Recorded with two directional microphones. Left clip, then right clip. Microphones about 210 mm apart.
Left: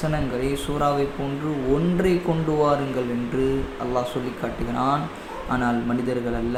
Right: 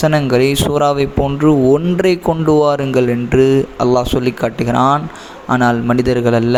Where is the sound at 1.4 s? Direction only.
45° right (ahead or behind).